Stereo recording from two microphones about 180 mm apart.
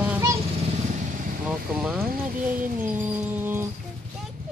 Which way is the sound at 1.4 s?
5° right (ahead or behind).